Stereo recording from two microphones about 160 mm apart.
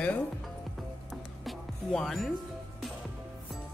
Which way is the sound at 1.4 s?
Centre (ahead or behind).